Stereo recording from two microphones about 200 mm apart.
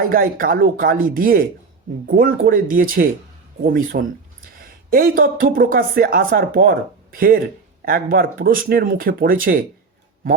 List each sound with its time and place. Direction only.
0.0 s speech: 45° right (ahead or behind)